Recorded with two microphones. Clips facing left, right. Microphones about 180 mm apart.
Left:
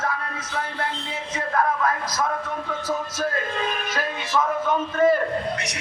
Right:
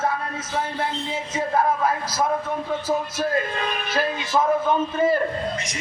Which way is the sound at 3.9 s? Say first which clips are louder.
Right 4 dB; 30° right (ahead or behind).